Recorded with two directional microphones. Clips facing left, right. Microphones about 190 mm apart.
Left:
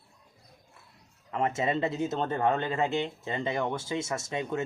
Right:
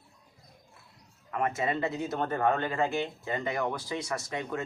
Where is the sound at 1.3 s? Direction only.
25° left (ahead or behind).